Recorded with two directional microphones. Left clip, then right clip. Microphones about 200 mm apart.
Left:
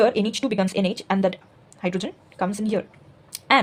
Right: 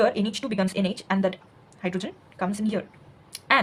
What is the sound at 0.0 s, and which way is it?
A woman's voice, 30° left (ahead or behind).